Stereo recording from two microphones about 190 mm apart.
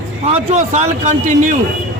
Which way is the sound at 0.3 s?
35° right (ahead or behind).